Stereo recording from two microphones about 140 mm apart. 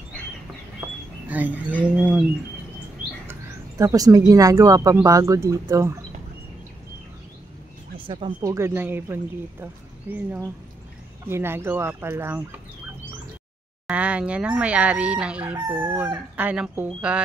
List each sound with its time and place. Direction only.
1.3 s speech: 10° right (ahead or behind)
3.3 s a sound: 20° right (ahead or behind)
4.3 s speech: 25° right (ahead or behind)
8.0 s speech: 35° right (ahead or behind); by 12.4 s 15° right (ahead or behind)
13.8 s speech: 10° right (ahead or behind)